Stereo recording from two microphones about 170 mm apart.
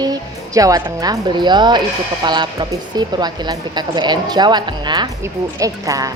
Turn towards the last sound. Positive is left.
turn(degrees=-20)  # may be behind; listen again after turning